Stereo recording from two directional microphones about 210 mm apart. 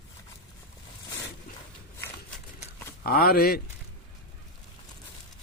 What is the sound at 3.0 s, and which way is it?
Speech, 45° left (ahead or behind).